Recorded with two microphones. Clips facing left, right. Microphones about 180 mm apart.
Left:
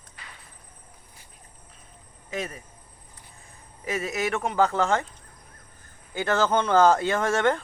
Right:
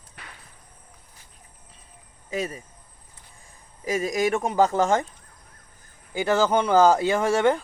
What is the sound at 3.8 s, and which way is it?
Speech, 35° right (ahead or behind).